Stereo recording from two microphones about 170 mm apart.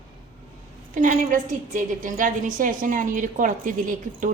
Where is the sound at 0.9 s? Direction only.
50° right (ahead or behind).